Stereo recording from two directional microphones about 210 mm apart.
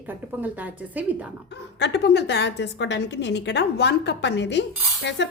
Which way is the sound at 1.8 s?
55° left (ahead or behind).